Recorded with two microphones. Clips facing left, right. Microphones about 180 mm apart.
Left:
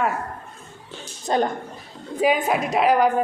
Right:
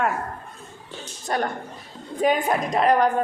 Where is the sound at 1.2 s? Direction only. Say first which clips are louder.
Left 4 dB; 20° left (ahead or behind).